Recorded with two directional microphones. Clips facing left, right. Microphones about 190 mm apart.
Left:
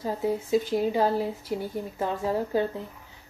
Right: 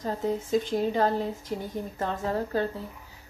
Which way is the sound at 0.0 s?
10° left (ahead or behind).